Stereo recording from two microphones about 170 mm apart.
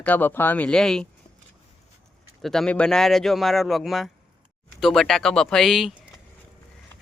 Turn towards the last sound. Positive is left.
turn(degrees=0)  # may be behind; listen again after turning